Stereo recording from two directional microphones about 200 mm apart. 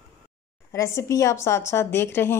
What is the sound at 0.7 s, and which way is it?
Speech, 15° left (ahead or behind).